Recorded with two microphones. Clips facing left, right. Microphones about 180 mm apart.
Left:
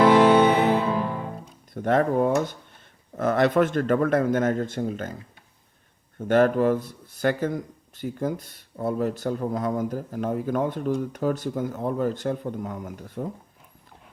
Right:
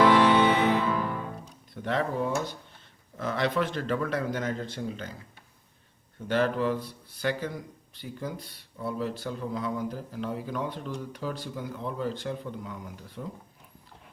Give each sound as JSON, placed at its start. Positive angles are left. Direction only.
{"t": 0.0, "sound": "music", "side_deg": 40}
{"t": 1.7, "sound": "speech", "side_deg": 50}
{"t": 6.1, "sound": "speech", "side_deg": 50}